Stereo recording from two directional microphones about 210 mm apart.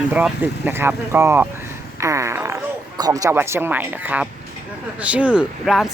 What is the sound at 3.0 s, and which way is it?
Speech, 15° right (ahead or behind).